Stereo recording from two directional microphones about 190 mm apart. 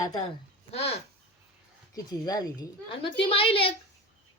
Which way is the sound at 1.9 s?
20° left (ahead or behind).